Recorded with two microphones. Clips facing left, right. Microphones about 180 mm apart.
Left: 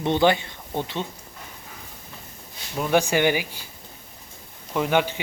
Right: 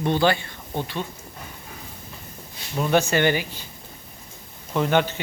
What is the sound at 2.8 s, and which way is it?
Speech, 10° left (ahead or behind).